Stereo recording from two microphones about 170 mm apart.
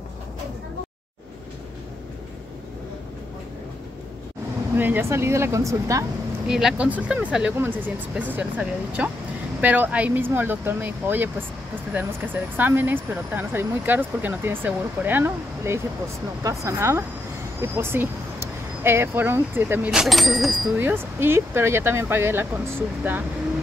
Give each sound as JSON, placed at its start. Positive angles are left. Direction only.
{"t": 4.7, "sound": "speech", "side_deg": -10}
{"t": 6.4, "sound": "speech", "side_deg": -5}
{"t": 12.5, "sound": "speech", "side_deg": -10}
{"t": 20.7, "sound": "speech", "side_deg": -15}